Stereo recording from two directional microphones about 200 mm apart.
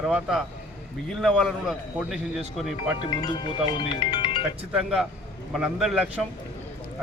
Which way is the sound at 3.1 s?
20° left (ahead or behind).